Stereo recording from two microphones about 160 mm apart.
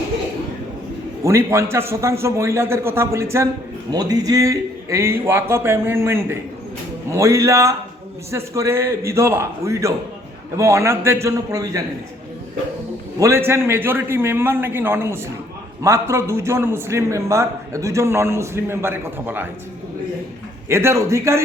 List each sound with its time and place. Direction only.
1.2 s a man's voice: 15° right (ahead or behind)
13.1 s a man's voice: 15° right (ahead or behind)
20.7 s a man's voice: 15° right (ahead or behind)